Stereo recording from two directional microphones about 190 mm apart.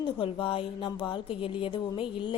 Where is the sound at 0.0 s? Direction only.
25° left (ahead or behind).